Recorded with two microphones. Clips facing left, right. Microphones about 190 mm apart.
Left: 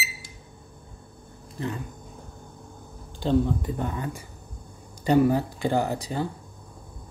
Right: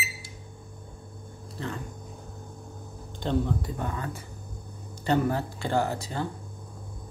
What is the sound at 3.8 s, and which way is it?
Speech, 20° left (ahead or behind).